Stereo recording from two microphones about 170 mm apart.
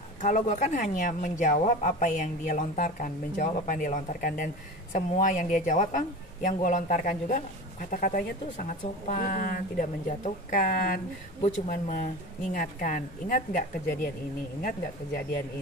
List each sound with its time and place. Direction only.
0.2 s a woman's voice: 45° left (ahead or behind)